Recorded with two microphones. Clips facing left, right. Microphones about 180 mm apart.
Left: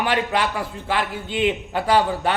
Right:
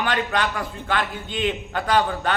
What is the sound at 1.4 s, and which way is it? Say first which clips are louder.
Speech: left 3 dB; 30° left (ahead or behind).